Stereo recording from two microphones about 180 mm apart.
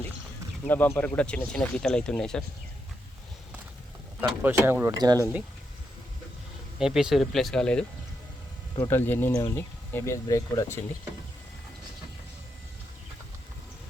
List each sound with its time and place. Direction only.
0.7 s speech: 10° left (ahead or behind)
4.2 s speech: 10° right (ahead or behind)
6.7 s speech: 5° right (ahead or behind)
8.7 s speech: 15° left (ahead or behind)